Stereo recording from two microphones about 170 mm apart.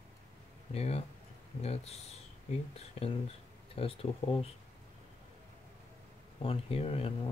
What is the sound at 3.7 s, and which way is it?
Speech, 35° left (ahead or behind).